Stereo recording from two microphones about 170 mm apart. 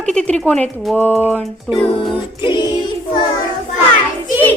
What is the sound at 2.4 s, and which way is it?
Music, 25° left (ahead or behind).